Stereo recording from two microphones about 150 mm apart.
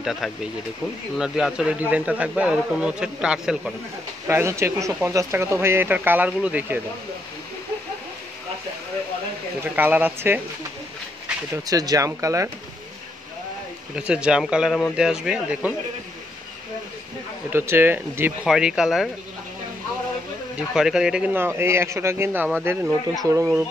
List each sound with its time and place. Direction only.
0.0 s speech: centre (ahead or behind)
4.3 s speech: 15° right (ahead or behind)
9.6 s speech: 10° right (ahead or behind)
11.5 s speech: 25° right (ahead or behind)
13.9 s speech: 5° right (ahead or behind)
17.5 s speech: 15° right (ahead or behind)
20.7 s speech: 5° right (ahead or behind); by 23.6 s 20° right (ahead or behind)